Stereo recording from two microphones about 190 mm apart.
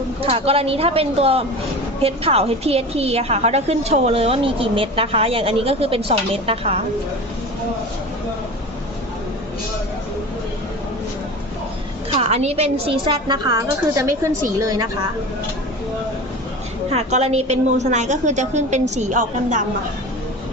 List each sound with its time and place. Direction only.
0.2 s a woman's voice: 30° right (ahead or behind)
12.2 s a woman's voice: 35° right (ahead or behind); by 14.3 s 15° right (ahead or behind)
16.9 s a woman's voice: 35° right (ahead or behind)